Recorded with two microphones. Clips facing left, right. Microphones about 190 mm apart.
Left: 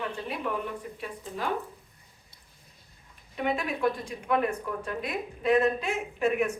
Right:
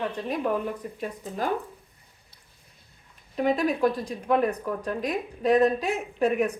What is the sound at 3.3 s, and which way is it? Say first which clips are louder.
Speech: right 6 dB; 40° right (ahead or behind).